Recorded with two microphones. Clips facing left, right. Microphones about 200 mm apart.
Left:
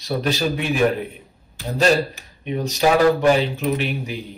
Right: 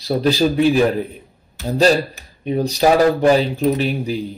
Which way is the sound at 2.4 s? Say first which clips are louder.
Right 4 dB; 35° right (ahead or behind).